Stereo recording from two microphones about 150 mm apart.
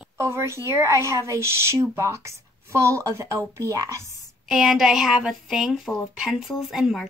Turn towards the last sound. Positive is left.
turn(degrees=0)  # may be behind; listen again after turning